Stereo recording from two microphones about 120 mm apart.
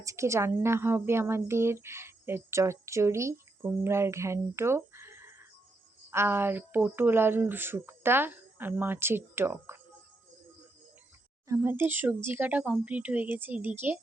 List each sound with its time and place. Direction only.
0.0 s a woman's voice: 25° right (ahead or behind)
11.4 s speech: 20° right (ahead or behind)